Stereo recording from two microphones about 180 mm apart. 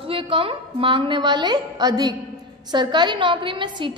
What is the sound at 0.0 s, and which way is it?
A woman's voice, 30° right (ahead or behind).